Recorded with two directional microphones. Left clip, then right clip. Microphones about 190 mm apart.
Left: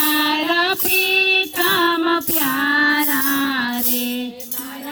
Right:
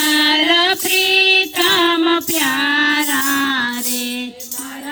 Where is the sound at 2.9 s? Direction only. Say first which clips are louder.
Right 3 dB; 35° right (ahead or behind).